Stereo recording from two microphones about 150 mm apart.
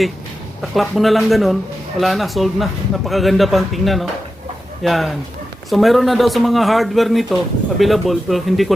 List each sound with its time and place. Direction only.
0.6 s speech: centre (ahead or behind)